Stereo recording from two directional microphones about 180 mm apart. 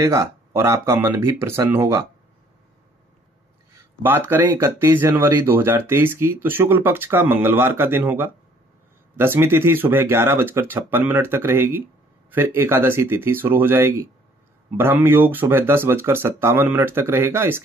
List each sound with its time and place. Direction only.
0.0 s speech: 15° right (ahead or behind)
4.0 s speech: 10° right (ahead or behind)